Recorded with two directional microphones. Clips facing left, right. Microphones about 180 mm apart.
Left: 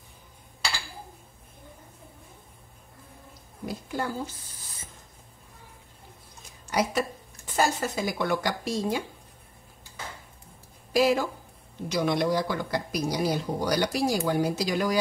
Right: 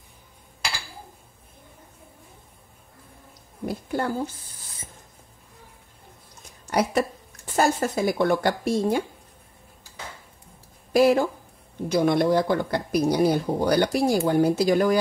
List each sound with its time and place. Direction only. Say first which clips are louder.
3.6 s speech: right 5 dB; 55° right (ahead or behind)
6.7 s a sound: right 3 dB; 55° right (ahead or behind)
7.5 s speech: right 4 dB; 55° right (ahead or behind)
10.9 s speech: right 5 dB; 55° right (ahead or behind)